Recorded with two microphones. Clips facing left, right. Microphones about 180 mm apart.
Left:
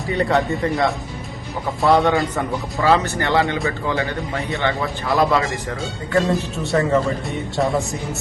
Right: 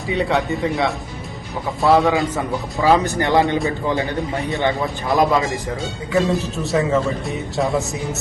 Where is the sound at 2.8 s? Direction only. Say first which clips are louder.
Right 2 dB; 15° right (ahead or behind).